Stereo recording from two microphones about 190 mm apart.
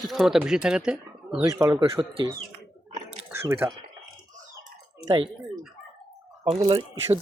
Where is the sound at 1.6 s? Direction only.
25° right (ahead or behind).